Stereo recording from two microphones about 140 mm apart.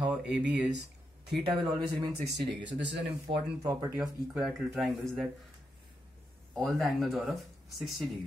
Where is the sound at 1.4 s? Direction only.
35° right (ahead or behind).